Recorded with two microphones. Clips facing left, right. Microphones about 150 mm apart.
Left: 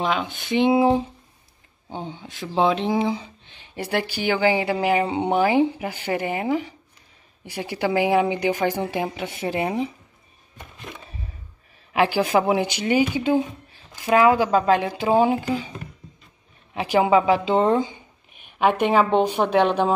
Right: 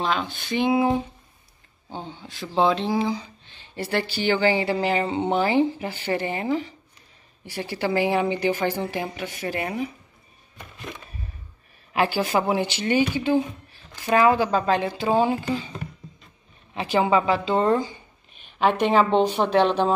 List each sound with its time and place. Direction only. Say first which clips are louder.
0.0 s speech: left 1 dB; 15° left (ahead or behind)
1.9 s speech: left 3 dB; 15° left (ahead or behind)
11.9 s speech: left 3 dB; 15° left (ahead or behind)
16.7 s speech: left 3 dB; 15° left (ahead or behind)